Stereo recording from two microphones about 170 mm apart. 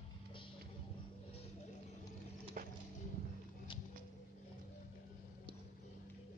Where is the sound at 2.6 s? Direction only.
55° right (ahead or behind).